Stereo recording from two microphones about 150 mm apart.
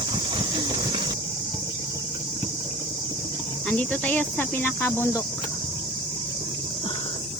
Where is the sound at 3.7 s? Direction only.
10° left (ahead or behind).